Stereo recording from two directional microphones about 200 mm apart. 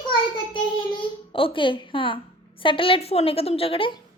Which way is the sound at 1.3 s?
25° left (ahead or behind).